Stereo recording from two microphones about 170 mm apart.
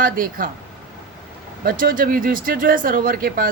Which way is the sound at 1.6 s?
55° right (ahead or behind).